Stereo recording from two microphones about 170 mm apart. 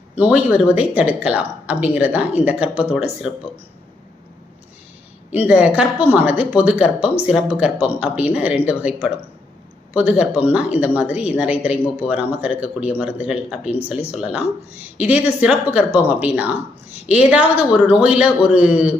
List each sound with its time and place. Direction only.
0.2 s speech: 5° right (ahead or behind)
5.3 s speech: 10° right (ahead or behind)